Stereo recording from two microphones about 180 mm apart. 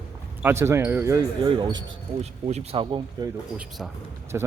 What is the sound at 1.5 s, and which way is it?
Speech, 25° right (ahead or behind).